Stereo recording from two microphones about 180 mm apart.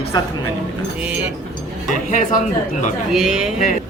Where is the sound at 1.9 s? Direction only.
45° left (ahead or behind).